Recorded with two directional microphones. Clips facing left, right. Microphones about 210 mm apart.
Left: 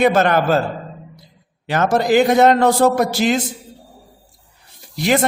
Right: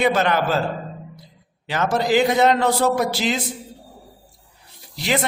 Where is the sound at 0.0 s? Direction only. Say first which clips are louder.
Left 4 dB; 45° left (ahead or behind).